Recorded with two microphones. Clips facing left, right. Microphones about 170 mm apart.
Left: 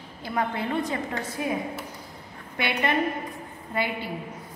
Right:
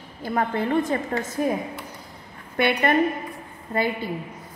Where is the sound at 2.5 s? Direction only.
55° right (ahead or behind).